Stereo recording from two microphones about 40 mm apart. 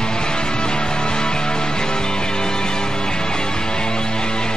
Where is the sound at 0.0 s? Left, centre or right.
Centre.